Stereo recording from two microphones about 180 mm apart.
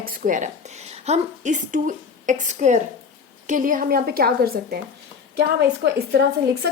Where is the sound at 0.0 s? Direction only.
50° right (ahead or behind).